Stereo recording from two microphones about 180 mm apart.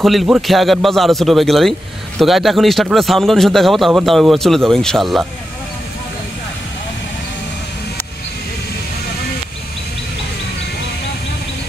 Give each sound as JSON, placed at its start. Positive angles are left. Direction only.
{"t": 0.0, "sound": "a man's voice", "side_deg": 0}